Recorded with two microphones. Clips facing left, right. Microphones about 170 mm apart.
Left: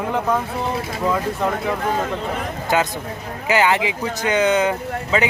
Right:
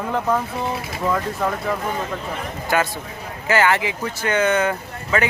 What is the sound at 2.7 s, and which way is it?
A man's voice, 20° left (ahead or behind).